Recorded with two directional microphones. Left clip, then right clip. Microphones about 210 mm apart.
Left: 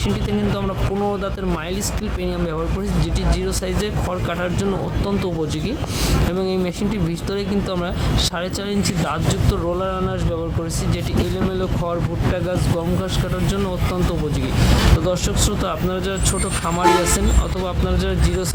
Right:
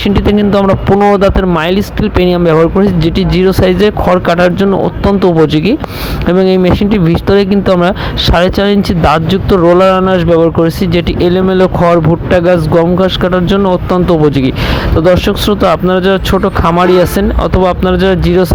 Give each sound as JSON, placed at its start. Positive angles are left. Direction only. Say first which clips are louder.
{"t": 1.1, "sound": "speech", "louder": "right 16 dB", "side_deg": -35}